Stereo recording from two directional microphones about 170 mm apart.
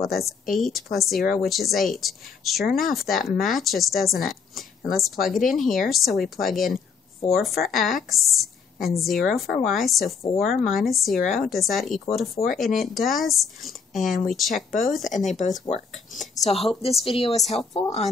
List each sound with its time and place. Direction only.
0.0 s a woman's voice: centre (ahead or behind)
15.1 s speech: 45° left (ahead or behind)
16.1 s a woman's voice: centre (ahead or behind)
16.4 s a woman's voice: 35° left (ahead or behind)